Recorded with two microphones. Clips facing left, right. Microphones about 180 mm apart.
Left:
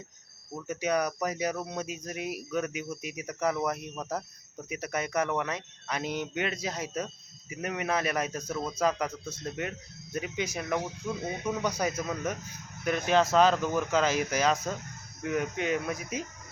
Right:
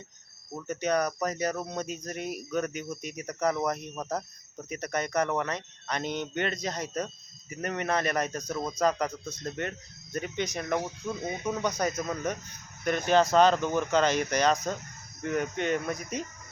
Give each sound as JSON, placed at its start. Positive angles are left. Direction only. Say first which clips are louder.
{"t": 0.7, "sound": "speech", "louder": "right 1 dB", "side_deg": 5}
{"t": 11.2, "sound": "speech", "louder": "right 1 dB", "side_deg": -10}
{"t": 11.6, "sound": "speech", "louder": "right 2 dB", "side_deg": 10}